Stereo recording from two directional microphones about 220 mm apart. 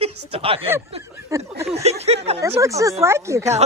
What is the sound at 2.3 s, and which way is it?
Speech, 10° right (ahead or behind).